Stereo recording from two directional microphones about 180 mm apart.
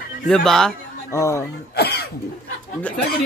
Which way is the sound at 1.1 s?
15° left (ahead or behind).